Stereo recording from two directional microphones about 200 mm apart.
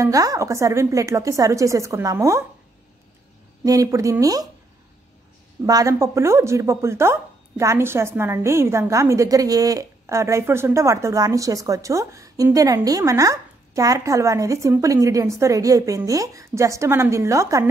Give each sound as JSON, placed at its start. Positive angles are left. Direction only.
{"t": 0.0, "sound": "speech", "side_deg": -15}
{"t": 3.6, "sound": "speech", "side_deg": -15}
{"t": 5.7, "sound": "speech", "side_deg": -15}